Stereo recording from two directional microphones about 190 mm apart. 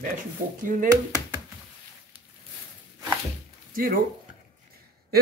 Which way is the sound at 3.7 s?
50° right (ahead or behind).